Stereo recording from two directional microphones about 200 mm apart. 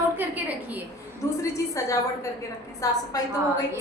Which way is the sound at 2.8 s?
15° left (ahead or behind).